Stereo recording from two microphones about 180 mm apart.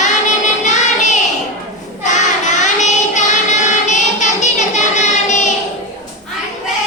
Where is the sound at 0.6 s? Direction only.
40° left (ahead or behind).